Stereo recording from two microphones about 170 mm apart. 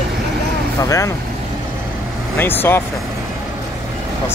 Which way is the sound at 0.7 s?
15° left (ahead or behind).